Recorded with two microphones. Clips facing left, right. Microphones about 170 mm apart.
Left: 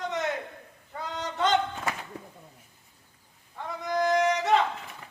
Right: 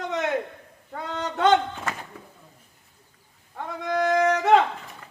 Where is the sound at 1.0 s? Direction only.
65° right (ahead or behind).